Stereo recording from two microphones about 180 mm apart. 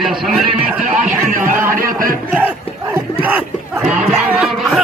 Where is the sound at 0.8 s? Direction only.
45° right (ahead or behind).